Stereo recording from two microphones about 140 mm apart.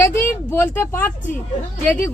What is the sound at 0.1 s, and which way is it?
Speech, 20° left (ahead or behind).